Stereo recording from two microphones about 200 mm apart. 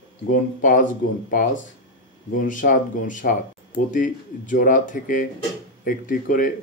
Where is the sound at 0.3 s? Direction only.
40° left (ahead or behind).